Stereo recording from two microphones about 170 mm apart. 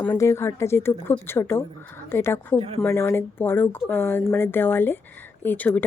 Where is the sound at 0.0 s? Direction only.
15° left (ahead or behind).